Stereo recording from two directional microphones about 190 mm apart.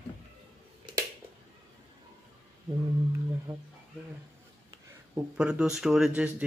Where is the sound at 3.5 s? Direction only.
25° right (ahead or behind).